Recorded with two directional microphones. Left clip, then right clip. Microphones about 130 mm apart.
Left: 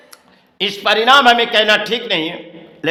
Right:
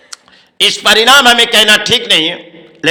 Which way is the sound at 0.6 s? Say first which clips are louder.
Right 7 dB; 25° right (ahead or behind).